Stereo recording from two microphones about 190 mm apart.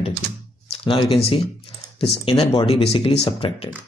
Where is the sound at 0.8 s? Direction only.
30° left (ahead or behind).